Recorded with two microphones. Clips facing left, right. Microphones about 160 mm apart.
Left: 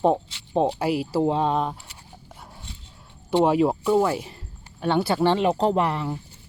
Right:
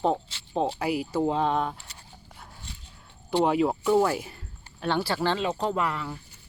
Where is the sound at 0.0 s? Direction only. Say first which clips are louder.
Left 5 dB; 15° left (ahead or behind).